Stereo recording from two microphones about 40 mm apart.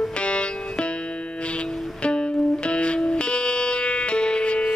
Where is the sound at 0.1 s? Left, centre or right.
Left.